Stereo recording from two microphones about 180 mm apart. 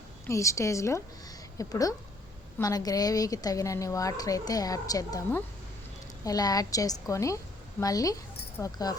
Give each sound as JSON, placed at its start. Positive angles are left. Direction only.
{"t": 0.3, "sound": "a woman's voice", "side_deg": 15}